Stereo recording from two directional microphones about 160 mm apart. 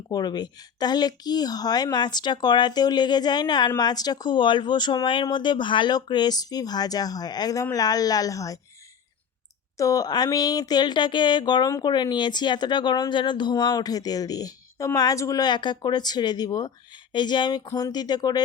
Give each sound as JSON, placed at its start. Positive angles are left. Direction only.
{"t": 0.1, "sound": "speech", "side_deg": 25}
{"t": 9.7, "sound": "speech", "side_deg": 20}